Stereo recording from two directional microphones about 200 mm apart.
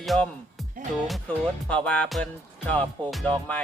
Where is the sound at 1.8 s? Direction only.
5° left (ahead or behind).